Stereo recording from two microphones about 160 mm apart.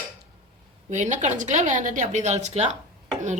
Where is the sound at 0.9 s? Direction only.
50° right (ahead or behind).